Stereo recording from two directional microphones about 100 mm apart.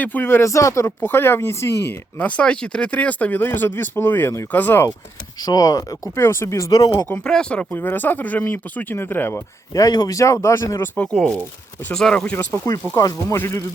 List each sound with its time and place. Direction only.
0.0 s speech: 20° left (ahead or behind)
5.4 s speech: 40° left (ahead or behind)
7.0 s speech: 10° left (ahead or behind)
9.7 s speech: 40° left (ahead or behind)
10.9 s speech: 10° left (ahead or behind)
13.0 s speech: 35° left (ahead or behind)